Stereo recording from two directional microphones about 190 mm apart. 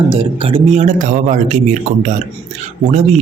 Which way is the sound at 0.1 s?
25° right (ahead or behind).